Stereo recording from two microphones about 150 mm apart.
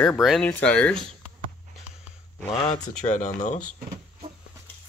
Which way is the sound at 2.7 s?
55° left (ahead or behind).